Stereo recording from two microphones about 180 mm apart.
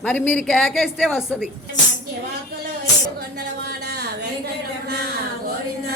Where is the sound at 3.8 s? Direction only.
65° right (ahead or behind).